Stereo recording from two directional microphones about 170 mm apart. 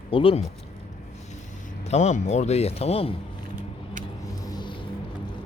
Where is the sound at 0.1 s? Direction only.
30° left (ahead or behind).